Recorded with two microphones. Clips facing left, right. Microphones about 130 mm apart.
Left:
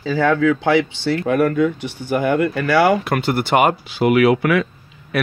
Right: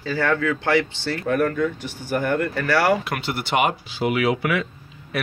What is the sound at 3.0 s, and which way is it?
Speech, 50° left (ahead or behind).